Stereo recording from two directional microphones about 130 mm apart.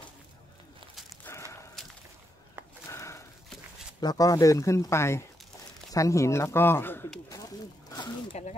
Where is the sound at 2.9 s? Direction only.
20° left (ahead or behind).